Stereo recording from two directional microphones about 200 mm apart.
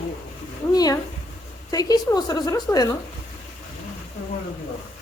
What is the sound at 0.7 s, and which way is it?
A woman's voice, 20° left (ahead or behind).